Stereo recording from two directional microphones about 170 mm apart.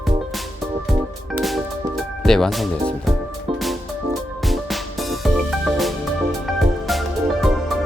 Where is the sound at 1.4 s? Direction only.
Centre (ahead or behind).